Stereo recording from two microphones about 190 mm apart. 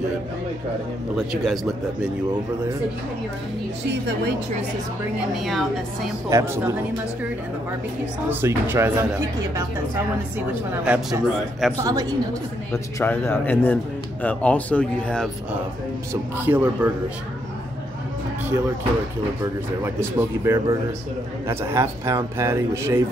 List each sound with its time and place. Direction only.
1.1 s a man's voice: centre (ahead or behind)
5.3 s a man's voice: centre (ahead or behind)
6.3 s a man's voice: 10° right (ahead or behind)
8.3 s a man's voice: 10° right (ahead or behind)
10.7 s a man's voice: 5° right (ahead or behind)
11.8 s a woman's voice: 20° right (ahead or behind)
12.7 s a man's voice: 10° left (ahead or behind)
16.1 s a man's voice: 10° right (ahead or behind)
19.4 s a man's voice: 15° right (ahead or behind)